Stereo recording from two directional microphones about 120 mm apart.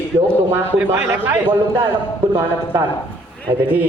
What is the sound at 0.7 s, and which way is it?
A man's voice, 10° right (ahead or behind).